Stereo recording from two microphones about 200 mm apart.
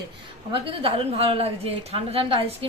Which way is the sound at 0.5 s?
25° right (ahead or behind).